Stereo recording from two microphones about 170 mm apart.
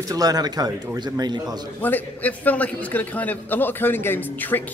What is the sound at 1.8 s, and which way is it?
A man's voice, 10° left (ahead or behind).